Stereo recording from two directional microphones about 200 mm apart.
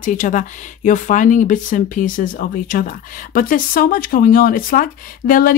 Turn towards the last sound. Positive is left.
turn(degrees=45)  # may be behind; listen again after turning